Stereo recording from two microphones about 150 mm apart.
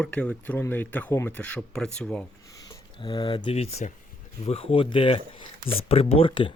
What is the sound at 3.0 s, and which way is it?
Speech, 30° left (ahead or behind).